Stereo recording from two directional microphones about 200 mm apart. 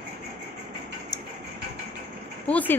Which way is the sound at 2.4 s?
5° left (ahead or behind).